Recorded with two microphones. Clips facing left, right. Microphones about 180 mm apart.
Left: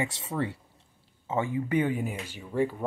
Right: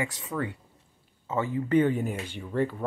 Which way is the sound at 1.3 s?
15° left (ahead or behind).